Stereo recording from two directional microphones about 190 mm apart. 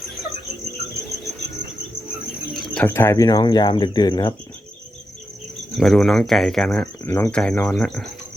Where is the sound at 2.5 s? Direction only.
Centre (ahead or behind).